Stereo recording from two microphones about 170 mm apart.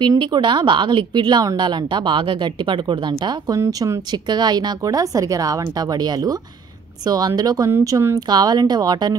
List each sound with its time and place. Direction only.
0.0 s a woman's voice: 25° right (ahead or behind)